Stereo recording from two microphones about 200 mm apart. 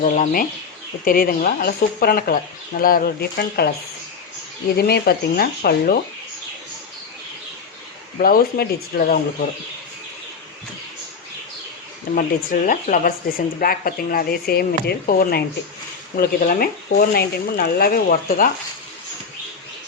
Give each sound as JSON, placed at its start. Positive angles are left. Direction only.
{"t": 0.0, "sound": "speech", "side_deg": 40}
{"t": 4.8, "sound": "speech", "side_deg": 50}
{"t": 8.2, "sound": "speech", "side_deg": 45}
{"t": 12.1, "sound": "speech", "side_deg": 40}